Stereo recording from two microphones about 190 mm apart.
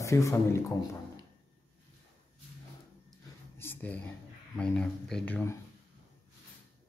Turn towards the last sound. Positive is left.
turn(degrees=10)  # may be behind; listen again after turning